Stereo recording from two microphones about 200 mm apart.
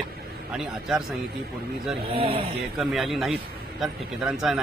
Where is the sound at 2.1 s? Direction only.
25° right (ahead or behind).